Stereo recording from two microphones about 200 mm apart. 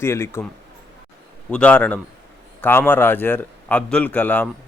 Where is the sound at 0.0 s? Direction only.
10° left (ahead or behind).